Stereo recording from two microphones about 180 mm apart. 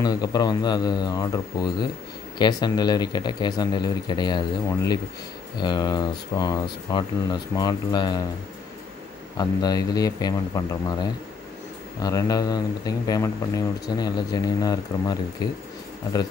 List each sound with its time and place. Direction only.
0.0 s speech: 20° left (ahead or behind)
9.4 s speech: 20° left (ahead or behind)
12.0 s speech: 20° left (ahead or behind)